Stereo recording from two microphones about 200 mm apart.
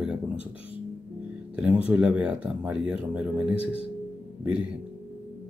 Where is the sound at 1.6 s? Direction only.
5° right (ahead or behind).